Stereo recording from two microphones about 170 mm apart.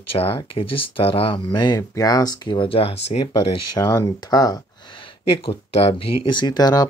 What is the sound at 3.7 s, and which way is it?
Speech, 20° left (ahead or behind).